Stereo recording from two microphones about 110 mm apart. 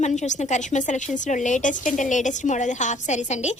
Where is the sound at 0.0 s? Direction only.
90° left.